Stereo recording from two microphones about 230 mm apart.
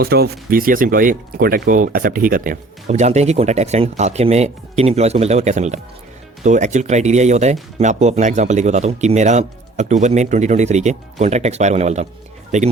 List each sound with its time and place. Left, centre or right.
0.0 s speech: right